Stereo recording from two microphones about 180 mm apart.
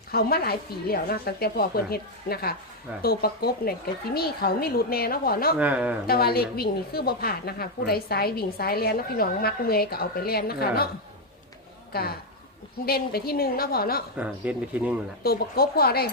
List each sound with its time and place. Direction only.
0.1 s a woman's voice: 60° left (ahead or behind)
5.5 s speech: 5° right (ahead or behind)
6.1 s a woman's voice: 60° left (ahead or behind)
11.9 s a woman's voice: 60° left (ahead or behind)
14.2 s speech: 10° right (ahead or behind)
15.2 s a woman's voice: 60° left (ahead or behind)